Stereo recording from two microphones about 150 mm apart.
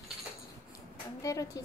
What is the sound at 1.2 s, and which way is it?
Speech, 25° left (ahead or behind).